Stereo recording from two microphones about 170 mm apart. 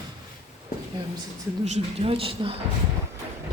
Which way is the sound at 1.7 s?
35° right (ahead or behind).